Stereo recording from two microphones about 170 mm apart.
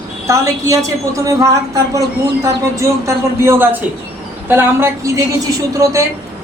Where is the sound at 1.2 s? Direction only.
20° right (ahead or behind).